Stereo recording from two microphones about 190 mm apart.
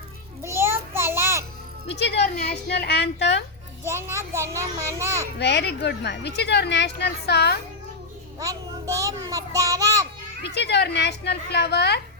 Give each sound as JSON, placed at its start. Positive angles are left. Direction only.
{"t": 0.4, "sound": "a sound", "side_deg": -15}
{"t": 1.9, "sound": "a woman's voice", "side_deg": 65}
{"t": 3.8, "sound": "a child's voice", "side_deg": -15}
{"t": 5.4, "sound": "a woman's voice", "side_deg": 65}
{"t": 8.4, "sound": "a sound", "side_deg": -15}
{"t": 10.4, "sound": "a woman's voice", "side_deg": 60}